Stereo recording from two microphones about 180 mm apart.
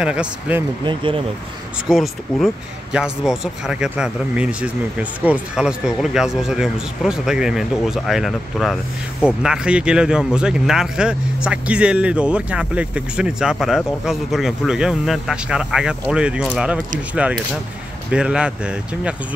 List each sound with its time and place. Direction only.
0.0 s speech: 5° right (ahead or behind)
0.8 s speech: 30° right (ahead or behind)
1.9 s speech: centre (ahead or behind)